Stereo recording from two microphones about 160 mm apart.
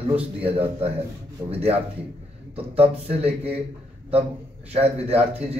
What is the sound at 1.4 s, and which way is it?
A man's voice, 40° right (ahead or behind).